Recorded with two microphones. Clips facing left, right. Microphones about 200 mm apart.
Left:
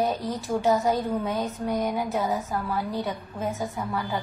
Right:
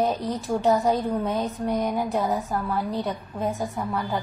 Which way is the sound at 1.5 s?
Centre (ahead or behind).